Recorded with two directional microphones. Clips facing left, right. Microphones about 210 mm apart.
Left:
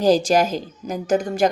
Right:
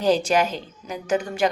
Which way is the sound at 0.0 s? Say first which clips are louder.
Left 3 dB; 40° left (ahead or behind).